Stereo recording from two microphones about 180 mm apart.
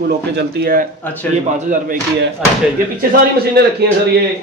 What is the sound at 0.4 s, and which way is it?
Speech, 55° right (ahead or behind).